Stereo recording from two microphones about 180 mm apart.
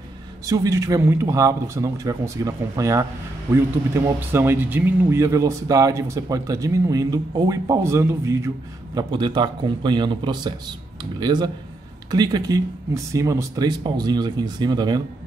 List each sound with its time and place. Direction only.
0.5 s speech: 15° right (ahead or behind)